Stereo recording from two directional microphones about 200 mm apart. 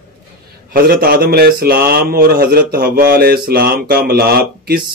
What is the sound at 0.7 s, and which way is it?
Speech, 45° right (ahead or behind).